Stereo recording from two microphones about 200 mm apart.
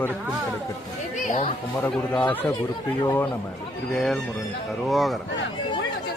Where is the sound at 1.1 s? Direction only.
35° left (ahead or behind).